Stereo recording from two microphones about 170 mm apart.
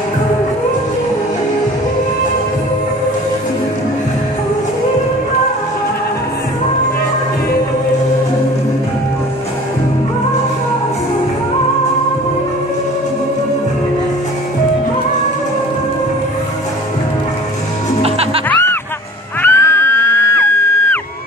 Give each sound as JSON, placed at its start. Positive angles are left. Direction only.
{"t": 18.0, "sound": "music", "side_deg": -35}
{"t": 18.5, "sound": "music", "side_deg": 15}